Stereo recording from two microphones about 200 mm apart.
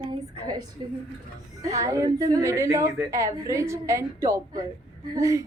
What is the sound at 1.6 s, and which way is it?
A woman's voice, 15° right (ahead or behind).